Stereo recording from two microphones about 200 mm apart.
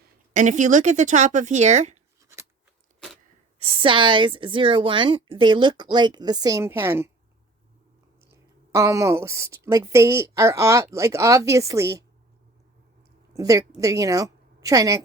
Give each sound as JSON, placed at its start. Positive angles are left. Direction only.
{"t": 0.3, "sound": "speech", "side_deg": -40}
{"t": 3.6, "sound": "speech", "side_deg": -25}
{"t": 8.3, "sound": "a woman's voice", "side_deg": -15}
{"t": 13.3, "sound": "a woman's voice", "side_deg": -15}